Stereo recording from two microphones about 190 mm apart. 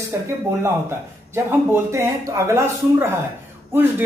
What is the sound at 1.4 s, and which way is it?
Speech, 10° right (ahead or behind).